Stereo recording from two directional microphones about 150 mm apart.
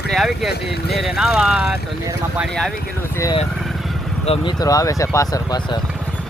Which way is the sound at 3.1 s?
20° left (ahead or behind).